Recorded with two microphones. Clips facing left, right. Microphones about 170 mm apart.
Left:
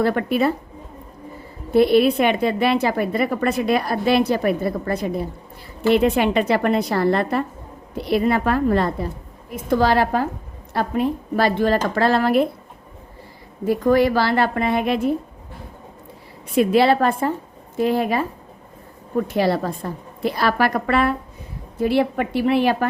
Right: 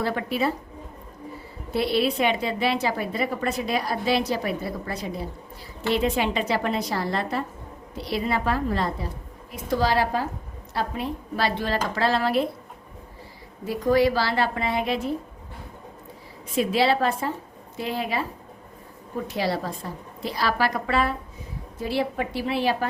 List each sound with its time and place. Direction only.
0.0 s speech: 55° left (ahead or behind)
1.7 s speech: 50° left (ahead or behind)
13.7 s speech: 55° left (ahead or behind)
16.6 s speech: 55° left (ahead or behind)
19.3 s speech: 55° left (ahead or behind)